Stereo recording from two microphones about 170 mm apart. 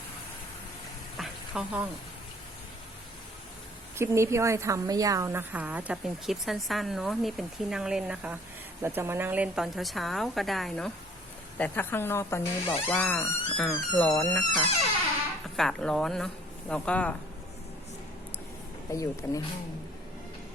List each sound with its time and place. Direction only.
1.2 s a sound: 5° right (ahead or behind)
3.9 s a woman's voice: 15° right (ahead or behind); by 17.2 s 5° left (ahead or behind)
18.9 s speech: 20° left (ahead or behind)